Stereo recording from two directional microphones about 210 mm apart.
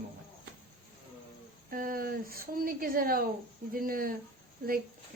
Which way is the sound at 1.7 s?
40° right (ahead or behind).